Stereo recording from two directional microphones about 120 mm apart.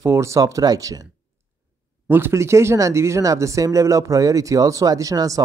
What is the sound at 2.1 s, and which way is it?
Speech, 20° right (ahead or behind).